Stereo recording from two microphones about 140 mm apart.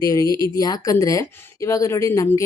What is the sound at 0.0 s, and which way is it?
A woman's voice, 25° left (ahead or behind).